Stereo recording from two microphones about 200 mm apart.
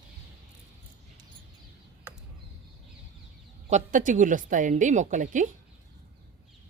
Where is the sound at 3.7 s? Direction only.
40° right (ahead or behind).